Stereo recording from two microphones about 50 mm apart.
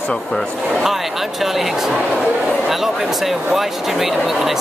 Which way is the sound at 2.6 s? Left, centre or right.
Centre.